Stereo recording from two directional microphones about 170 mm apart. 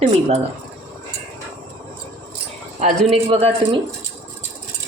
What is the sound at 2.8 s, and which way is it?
Speech, 35° right (ahead or behind).